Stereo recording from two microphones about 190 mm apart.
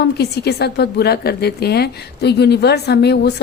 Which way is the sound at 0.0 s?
60° left (ahead or behind).